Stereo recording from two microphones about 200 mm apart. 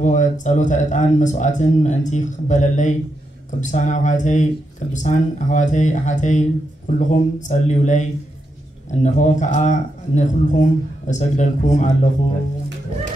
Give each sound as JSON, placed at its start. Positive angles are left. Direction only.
{"t": 0.0, "sound": "a man's voice", "side_deg": 35}